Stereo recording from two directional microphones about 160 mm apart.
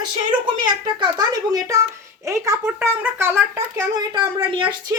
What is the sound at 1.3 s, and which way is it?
A woman's voice, 20° right (ahead or behind).